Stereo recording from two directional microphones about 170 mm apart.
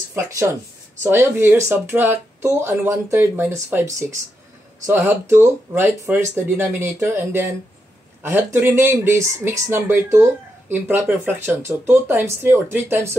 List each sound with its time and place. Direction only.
0.1 s speech: 15° right (ahead or behind)